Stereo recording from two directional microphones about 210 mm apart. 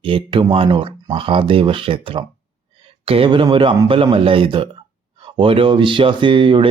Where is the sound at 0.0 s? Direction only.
25° right (ahead or behind).